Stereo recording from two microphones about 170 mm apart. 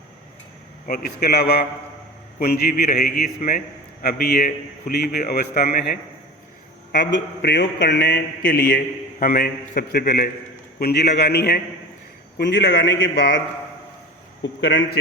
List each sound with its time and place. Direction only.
0.9 s a man's voice: 60° left (ahead or behind)
6.9 s a man's voice: 80° left
12.4 s speech: 90° left